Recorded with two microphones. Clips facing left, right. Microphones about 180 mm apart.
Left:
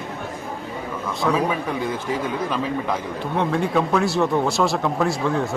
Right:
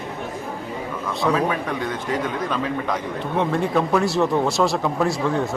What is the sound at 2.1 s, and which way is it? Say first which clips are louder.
A man's voice: right 2 dB; 5° left (ahead or behind).